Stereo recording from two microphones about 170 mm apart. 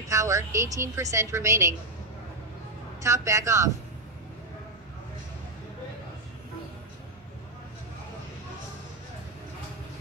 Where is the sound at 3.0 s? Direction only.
15° right (ahead or behind).